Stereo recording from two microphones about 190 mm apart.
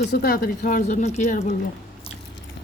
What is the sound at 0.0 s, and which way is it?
Speech, 55° left (ahead or behind).